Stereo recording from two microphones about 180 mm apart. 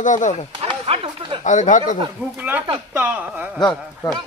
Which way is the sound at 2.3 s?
10° right (ahead or behind).